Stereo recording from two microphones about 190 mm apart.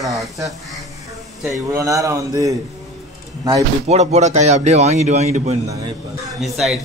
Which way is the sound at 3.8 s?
35° right (ahead or behind).